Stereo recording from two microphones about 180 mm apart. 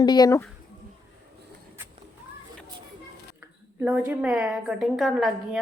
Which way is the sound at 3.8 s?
10° right (ahead or behind).